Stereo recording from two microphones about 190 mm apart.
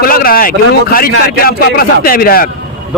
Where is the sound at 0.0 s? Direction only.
50° left (ahead or behind).